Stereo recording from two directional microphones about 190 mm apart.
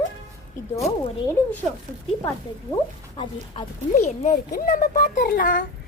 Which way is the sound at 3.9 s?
40° left (ahead or behind).